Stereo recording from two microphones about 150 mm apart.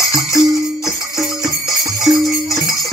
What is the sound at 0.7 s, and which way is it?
Music, 20° left (ahead or behind).